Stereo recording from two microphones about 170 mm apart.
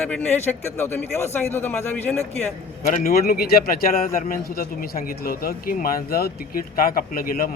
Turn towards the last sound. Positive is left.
turn(degrees=60)  # may be behind; listen again after turning